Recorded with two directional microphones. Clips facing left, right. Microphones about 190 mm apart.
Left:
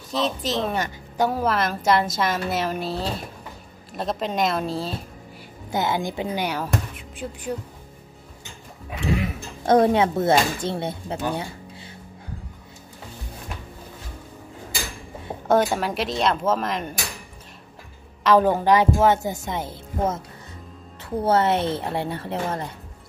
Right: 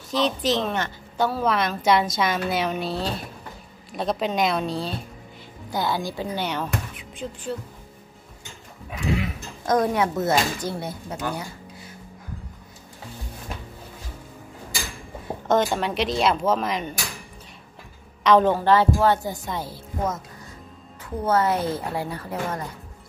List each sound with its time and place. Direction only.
0.1 s speech: centre (ahead or behind)
0.7 s a woman's voice: 15° left (ahead or behind)
1.5 s speech: centre (ahead or behind)
5.7 s a woman's voice: 20° left (ahead or behind); by 7.4 s centre (ahead or behind)
9.7 s a woman's voice: 30° left (ahead or behind)
15.4 s speech: 10° left (ahead or behind)
18.2 s a woman's voice: 5° left (ahead or behind); by 22.7 s 25° left (ahead or behind)